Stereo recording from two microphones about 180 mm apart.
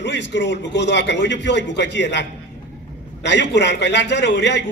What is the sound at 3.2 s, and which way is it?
A man's voice, 80° left.